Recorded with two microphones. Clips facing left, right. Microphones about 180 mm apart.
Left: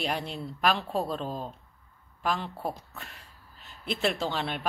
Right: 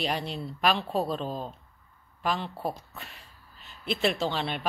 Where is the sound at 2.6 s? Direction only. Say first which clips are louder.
Right 1 dB; centre (ahead or behind).